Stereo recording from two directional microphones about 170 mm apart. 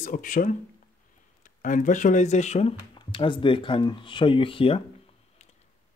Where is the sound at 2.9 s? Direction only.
30° left (ahead or behind).